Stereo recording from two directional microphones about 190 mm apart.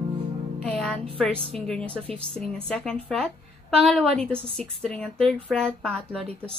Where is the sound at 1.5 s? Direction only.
5° left (ahead or behind).